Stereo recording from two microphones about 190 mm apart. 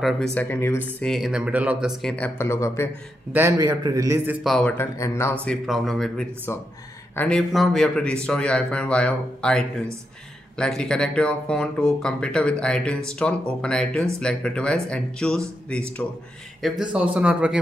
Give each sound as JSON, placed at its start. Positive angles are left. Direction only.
{"t": 0.0, "sound": "speech", "side_deg": 5}
{"t": 1.0, "sound": "speech", "side_deg": 0}
{"t": 3.3, "sound": "a man's voice", "side_deg": -15}
{"t": 4.4, "sound": "speech", "side_deg": 0}
{"t": 10.6, "sound": "speech", "side_deg": 5}